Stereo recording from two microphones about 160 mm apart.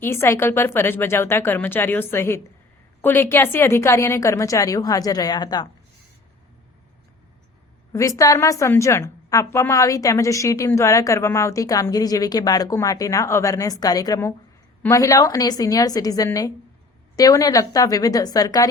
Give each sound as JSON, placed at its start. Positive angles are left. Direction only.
{"t": 0.0, "sound": "a woman's voice", "side_deg": 15}
{"t": 7.9, "sound": "a woman's voice", "side_deg": 20}